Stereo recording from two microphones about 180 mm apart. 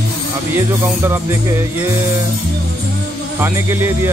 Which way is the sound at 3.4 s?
15° right (ahead or behind).